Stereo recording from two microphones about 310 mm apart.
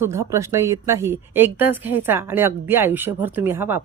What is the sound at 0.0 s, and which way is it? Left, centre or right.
Speech, centre.